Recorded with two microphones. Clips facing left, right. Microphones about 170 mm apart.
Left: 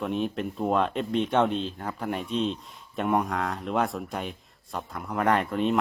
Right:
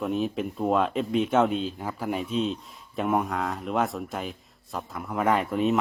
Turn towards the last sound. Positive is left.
turn(degrees=-5)  # may be behind; listen again after turning